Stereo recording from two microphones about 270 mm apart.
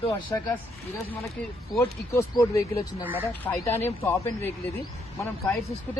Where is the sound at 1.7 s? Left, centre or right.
Centre.